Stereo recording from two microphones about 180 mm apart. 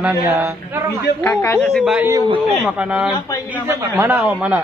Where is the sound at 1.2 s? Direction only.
15° left (ahead or behind).